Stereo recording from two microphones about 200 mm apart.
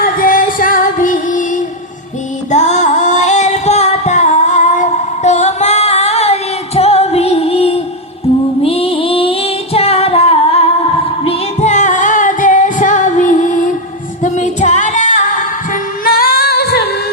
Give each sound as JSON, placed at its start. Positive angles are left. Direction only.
{"t": 0.0, "sound": "music", "side_deg": 45}
{"t": 2.5, "sound": "singing", "side_deg": 35}
{"t": 11.3, "sound": "music", "side_deg": 35}
{"t": 14.2, "sound": "singing", "side_deg": 40}